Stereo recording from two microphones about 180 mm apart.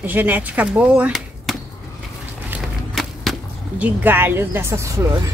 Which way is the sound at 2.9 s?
Centre (ahead or behind).